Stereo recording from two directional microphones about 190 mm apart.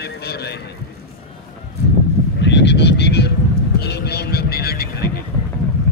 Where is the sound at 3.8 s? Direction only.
60° left (ahead or behind).